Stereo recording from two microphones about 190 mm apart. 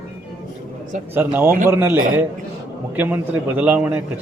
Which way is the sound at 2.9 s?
10° right (ahead or behind).